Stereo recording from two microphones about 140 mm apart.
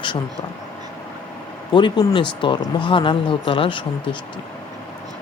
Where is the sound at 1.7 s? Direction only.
35° left (ahead or behind).